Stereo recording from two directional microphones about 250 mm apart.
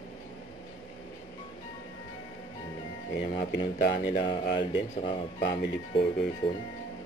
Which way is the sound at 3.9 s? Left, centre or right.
Centre.